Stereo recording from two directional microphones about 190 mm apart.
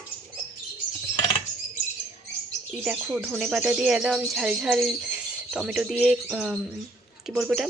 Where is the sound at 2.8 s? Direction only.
5° right (ahead or behind).